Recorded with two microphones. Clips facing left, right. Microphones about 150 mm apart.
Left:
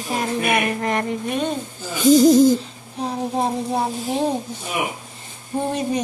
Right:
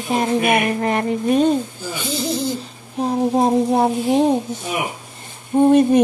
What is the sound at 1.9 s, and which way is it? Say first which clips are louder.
Speech: left 12 dB; 45° left (ahead or behind).